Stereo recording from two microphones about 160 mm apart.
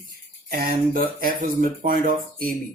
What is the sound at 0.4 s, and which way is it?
Speech, 70° right (ahead or behind).